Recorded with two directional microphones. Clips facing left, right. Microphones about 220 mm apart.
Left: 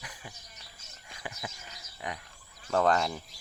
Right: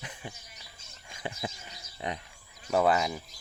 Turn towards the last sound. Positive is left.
turn(degrees=-5)  # may be behind; listen again after turning